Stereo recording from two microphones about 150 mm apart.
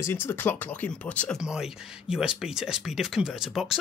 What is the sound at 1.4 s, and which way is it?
Speech, 5° right (ahead or behind).